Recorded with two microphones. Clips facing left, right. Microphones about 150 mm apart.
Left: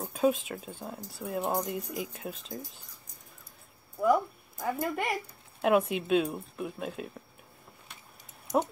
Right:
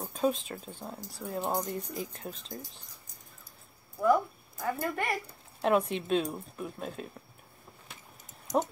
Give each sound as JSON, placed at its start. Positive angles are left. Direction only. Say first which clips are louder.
{"t": 0.0, "sound": "speech", "louder": "left 3 dB", "side_deg": 5}
{"t": 4.0, "sound": "speech", "louder": "even", "side_deg": 15}
{"t": 5.6, "sound": "speech", "louder": "left 2 dB", "side_deg": 5}